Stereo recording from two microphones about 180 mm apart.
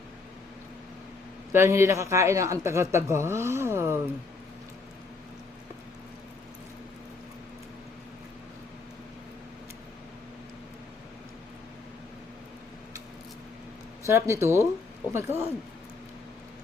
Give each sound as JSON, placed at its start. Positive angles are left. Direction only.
{"t": 1.5, "sound": "speech", "side_deg": -15}
{"t": 14.1, "sound": "speech", "side_deg": -15}